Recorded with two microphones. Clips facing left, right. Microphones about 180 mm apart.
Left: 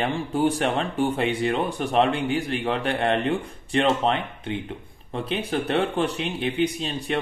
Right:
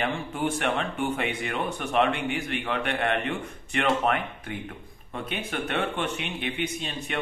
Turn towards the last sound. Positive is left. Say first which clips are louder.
# left 5 dB
turn(degrees=30)  # may be behind; listen again after turning